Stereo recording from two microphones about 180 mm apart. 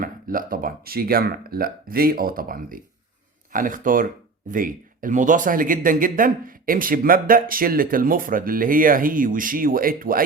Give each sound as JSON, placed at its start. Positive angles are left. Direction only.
{"t": 0.0, "sound": "speech", "side_deg": -50}